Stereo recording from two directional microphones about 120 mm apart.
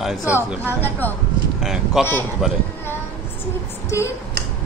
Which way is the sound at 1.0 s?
15° left (ahead or behind).